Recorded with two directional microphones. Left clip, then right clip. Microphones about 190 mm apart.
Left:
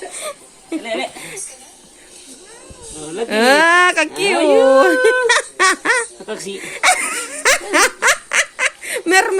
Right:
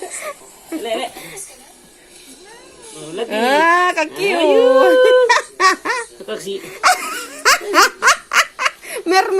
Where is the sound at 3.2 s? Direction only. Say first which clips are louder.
Left 2 dB; 35° left (ahead or behind).